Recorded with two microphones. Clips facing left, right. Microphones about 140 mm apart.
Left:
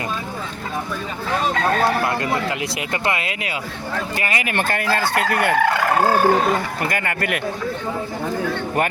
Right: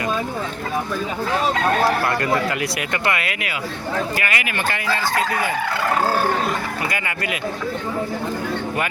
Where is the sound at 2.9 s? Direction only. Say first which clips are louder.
Left 2 dB; 25° left (ahead or behind).